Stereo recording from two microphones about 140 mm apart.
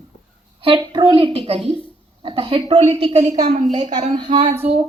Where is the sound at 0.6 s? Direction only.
35° right (ahead or behind).